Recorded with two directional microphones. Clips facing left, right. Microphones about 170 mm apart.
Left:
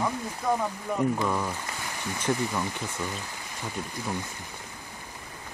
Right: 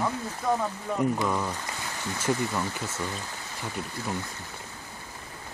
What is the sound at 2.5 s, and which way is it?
Speech, 15° left (ahead or behind).